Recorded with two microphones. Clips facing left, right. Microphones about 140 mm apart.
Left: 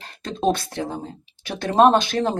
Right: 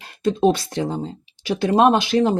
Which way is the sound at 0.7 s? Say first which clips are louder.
Right 4 dB; 20° right (ahead or behind).